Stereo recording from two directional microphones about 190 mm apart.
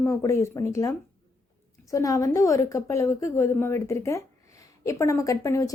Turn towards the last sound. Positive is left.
turn(degrees=15)  # may be behind; listen again after turning